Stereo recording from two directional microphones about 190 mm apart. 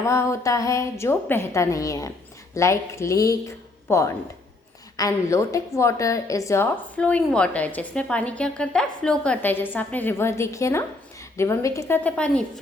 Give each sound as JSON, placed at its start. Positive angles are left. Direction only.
{"t": 0.0, "sound": "a woman's voice", "side_deg": 15}